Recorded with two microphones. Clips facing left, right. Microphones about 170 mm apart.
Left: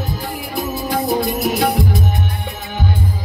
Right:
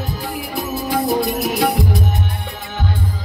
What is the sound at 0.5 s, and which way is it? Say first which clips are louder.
Music: even; centre (ahead or behind).